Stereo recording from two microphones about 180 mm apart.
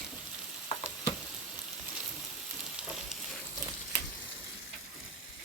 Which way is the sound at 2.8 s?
5° right (ahead or behind).